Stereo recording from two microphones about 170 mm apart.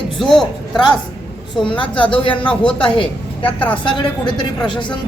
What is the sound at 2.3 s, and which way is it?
Speech, 5° left (ahead or behind).